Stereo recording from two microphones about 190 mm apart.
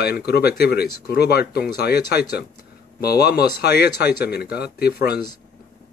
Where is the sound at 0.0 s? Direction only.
55° left (ahead or behind).